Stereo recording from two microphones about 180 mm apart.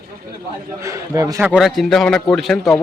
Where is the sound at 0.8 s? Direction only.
15° right (ahead or behind).